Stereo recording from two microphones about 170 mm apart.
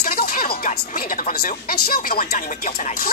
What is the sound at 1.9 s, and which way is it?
Speech, 60° left (ahead or behind).